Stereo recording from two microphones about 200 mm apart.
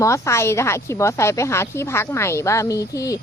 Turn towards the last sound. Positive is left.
turn(degrees=15)  # may be behind; listen again after turning